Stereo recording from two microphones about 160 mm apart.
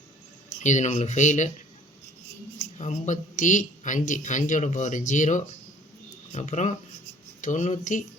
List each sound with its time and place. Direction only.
0.6 s speech: 50° left (ahead or behind)
2.7 s speech: 45° left (ahead or behind)